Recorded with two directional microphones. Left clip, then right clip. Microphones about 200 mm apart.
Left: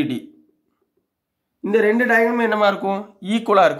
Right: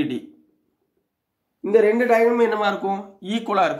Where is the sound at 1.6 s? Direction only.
40° left (ahead or behind).